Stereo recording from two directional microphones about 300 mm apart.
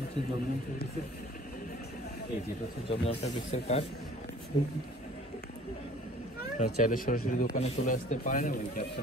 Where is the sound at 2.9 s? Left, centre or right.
Centre.